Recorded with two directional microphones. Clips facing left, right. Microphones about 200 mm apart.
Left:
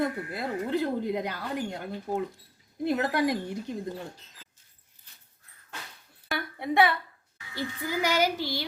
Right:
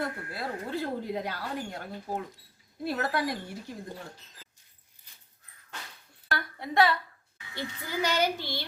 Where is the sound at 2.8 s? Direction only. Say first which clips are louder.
Left 4 dB; 20° left (ahead or behind).